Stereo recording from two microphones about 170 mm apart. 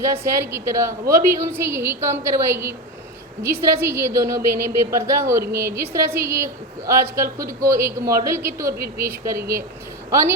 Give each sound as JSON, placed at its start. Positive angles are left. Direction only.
{"t": 0.0, "sound": "a woman's voice", "side_deg": -15}